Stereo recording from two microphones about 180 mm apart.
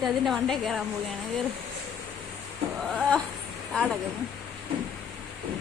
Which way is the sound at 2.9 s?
Centre (ahead or behind).